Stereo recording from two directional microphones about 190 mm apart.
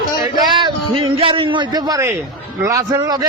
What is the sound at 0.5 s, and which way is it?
A man's voice, 25° right (ahead or behind).